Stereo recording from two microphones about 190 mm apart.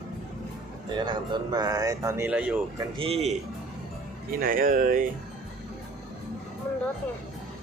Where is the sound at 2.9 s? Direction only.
30° right (ahead or behind).